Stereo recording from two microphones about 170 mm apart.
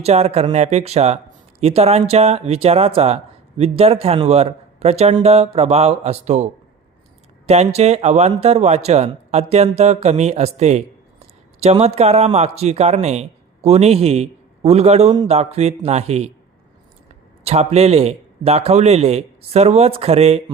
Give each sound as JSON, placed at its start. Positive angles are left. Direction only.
{"t": 0.0, "sound": "speech", "side_deg": -40}
{"t": 17.4, "sound": "speech", "side_deg": -40}